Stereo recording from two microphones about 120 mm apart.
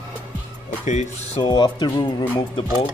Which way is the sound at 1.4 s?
40° left (ahead or behind).